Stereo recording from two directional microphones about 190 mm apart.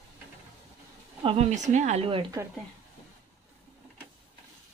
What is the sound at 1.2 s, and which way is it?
Speech, 30° right (ahead or behind).